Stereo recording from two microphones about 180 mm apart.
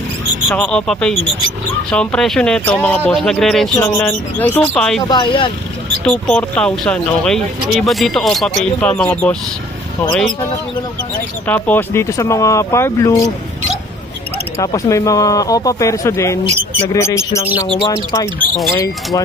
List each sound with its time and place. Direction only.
0.5 s speech: centre (ahead or behind)
5.1 s speech: 25° left (ahead or behind)
6.0 s speech: 10° left (ahead or behind)
11.4 s speech: 10° left (ahead or behind)
14.6 s speech: 20° left (ahead or behind)